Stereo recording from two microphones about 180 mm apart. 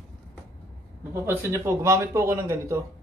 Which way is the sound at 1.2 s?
15° right (ahead or behind).